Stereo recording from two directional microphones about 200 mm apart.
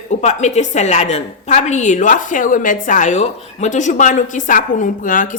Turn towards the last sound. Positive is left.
turn(degrees=40)  # may be behind; listen again after turning